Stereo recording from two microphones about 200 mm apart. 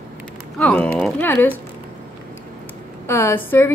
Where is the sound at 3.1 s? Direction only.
10° left (ahead or behind).